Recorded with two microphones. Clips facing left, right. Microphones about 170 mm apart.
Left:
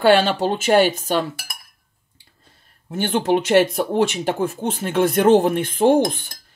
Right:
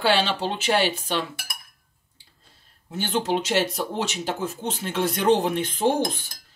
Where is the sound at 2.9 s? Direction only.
55° left (ahead or behind).